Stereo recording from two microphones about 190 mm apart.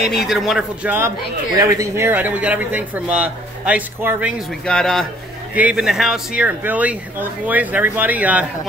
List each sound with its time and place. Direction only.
0.0 s a man's voice: centre (ahead or behind)